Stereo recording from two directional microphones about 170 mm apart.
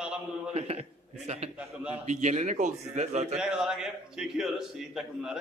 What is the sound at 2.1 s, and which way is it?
Speech, 45° right (ahead or behind).